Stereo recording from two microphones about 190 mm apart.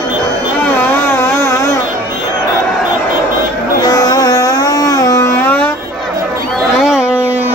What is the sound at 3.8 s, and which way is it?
Carnatic music, 20° left (ahead or behind).